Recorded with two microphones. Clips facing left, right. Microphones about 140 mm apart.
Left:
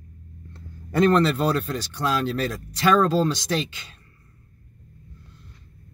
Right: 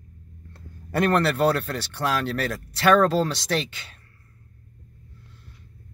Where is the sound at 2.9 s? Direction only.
70° right (ahead or behind).